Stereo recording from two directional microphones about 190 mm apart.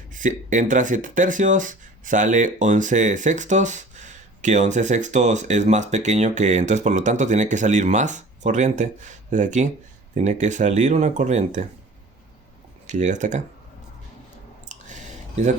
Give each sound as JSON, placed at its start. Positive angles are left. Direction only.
{"t": 0.1, "sound": "speech", "side_deg": -40}
{"t": 12.9, "sound": "speech", "side_deg": -40}
{"t": 14.6, "sound": "a sound", "side_deg": -40}